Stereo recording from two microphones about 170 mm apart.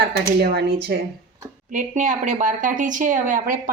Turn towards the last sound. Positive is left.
turn(degrees=-50)  # may be behind; listen again after turning